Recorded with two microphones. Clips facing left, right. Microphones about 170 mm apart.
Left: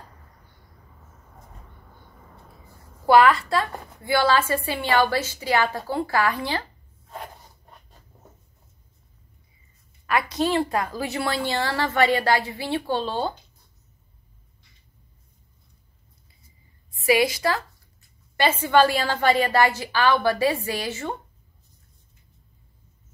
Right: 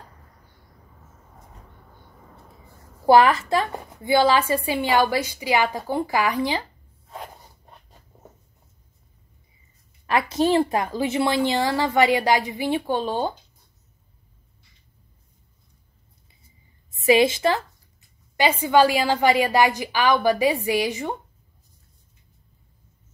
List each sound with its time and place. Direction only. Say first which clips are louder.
3.1 s speech: right 1 dB; 20° right (ahead or behind)
10.0 s speech: right 3 dB; 25° right (ahead or behind)
16.9 s a woman's voice: right 3 dB; 25° right (ahead or behind)